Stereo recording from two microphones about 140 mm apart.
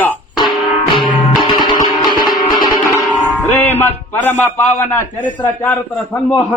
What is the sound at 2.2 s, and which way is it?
Music, 30° left (ahead or behind).